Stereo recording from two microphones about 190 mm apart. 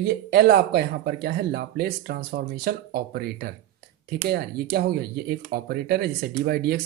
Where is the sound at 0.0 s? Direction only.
60° right (ahead or behind).